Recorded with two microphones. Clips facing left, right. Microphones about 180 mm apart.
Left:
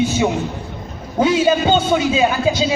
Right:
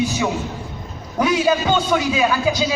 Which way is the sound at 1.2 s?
25° left (ahead or behind).